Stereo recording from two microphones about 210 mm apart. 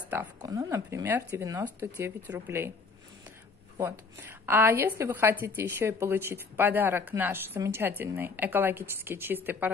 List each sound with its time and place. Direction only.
0.1 s a woman's voice: 10° right (ahead or behind)
3.7 s a woman's voice: 15° right (ahead or behind)